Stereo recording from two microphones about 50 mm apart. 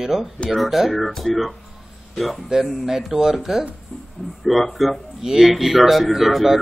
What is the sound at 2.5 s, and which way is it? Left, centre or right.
A man's voice, centre.